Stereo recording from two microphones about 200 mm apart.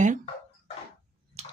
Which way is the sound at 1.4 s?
35° right (ahead or behind).